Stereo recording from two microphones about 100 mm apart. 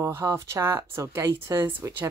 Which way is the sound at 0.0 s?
30° right (ahead or behind).